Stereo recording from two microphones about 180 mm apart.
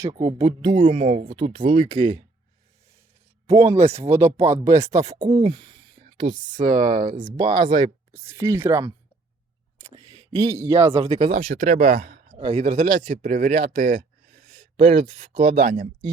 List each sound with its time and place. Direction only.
0.0 s speech: 25° right (ahead or behind)
0.9 s speech: 40° right (ahead or behind); by 2.2 s 25° right (ahead or behind)
3.5 s speech: 35° right (ahead or behind)
4.1 s speech: 15° right (ahead or behind)
6.5 s a man's voice: 45° right (ahead or behind)
7.3 s speech: 25° right (ahead or behind)
9.9 s speech: 20° right (ahead or behind)
10.9 s a man's voice: 35° right (ahead or behind); by 14.0 s 50° right (ahead or behind)
14.5 s a sound: 30° right (ahead or behind)
15.3 s speech: 35° right (ahead or behind)